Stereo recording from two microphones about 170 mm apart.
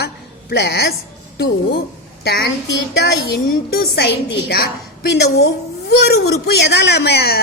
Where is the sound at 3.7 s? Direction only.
70° left (ahead or behind).